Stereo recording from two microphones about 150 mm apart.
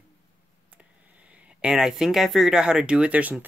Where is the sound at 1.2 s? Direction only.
5° right (ahead or behind).